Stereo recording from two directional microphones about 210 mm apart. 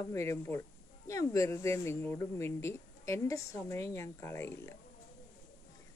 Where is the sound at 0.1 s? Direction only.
15° left (ahead or behind).